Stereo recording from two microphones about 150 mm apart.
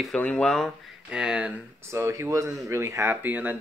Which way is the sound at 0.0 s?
5° left (ahead or behind).